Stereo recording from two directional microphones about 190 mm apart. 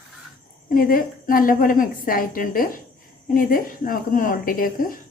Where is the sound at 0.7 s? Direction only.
50° left (ahead or behind).